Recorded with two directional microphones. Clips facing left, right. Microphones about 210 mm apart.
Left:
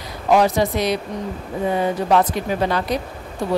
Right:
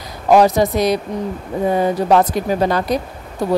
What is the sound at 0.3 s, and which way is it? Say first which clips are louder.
A woman's voice: right 4 dB; 40° right (ahead or behind).